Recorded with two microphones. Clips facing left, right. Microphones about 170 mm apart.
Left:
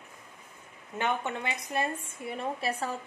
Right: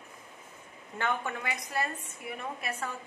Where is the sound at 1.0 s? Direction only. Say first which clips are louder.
Left 2 dB; 20° left (ahead or behind).